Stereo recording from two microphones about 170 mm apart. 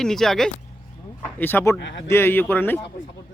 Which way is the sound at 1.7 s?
90° left.